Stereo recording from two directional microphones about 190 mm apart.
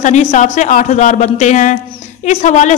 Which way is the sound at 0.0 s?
40° left (ahead or behind).